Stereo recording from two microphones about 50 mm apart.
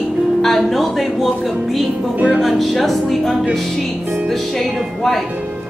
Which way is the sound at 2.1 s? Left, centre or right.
Right.